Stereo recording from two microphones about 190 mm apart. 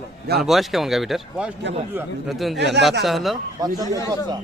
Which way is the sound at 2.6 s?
65° right (ahead or behind).